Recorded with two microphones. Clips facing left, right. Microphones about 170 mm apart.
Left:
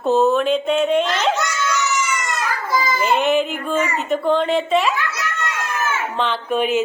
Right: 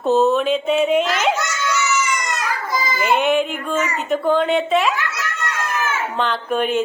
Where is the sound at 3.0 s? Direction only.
Centre (ahead or behind).